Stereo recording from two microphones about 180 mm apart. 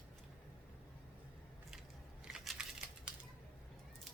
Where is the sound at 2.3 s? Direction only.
Centre (ahead or behind).